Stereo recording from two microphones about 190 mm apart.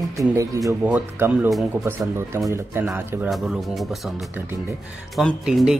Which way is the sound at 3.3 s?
Centre (ahead or behind).